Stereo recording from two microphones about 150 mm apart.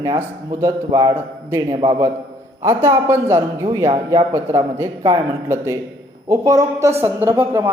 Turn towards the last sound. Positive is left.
turn(degrees=-15)  # may be behind; listen again after turning